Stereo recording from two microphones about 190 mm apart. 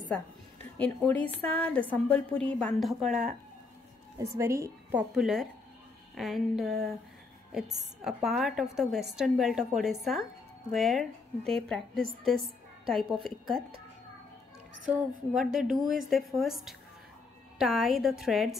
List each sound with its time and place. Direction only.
0.7 s a woman's voice: 10° left (ahead or behind)
4.2 s a woman's voice: 15° right (ahead or behind)
5.1 s a woman's voice: centre (ahead or behind)
8.0 s a woman's voice: centre (ahead or behind)
14.9 s a woman's voice: 5° right (ahead or behind)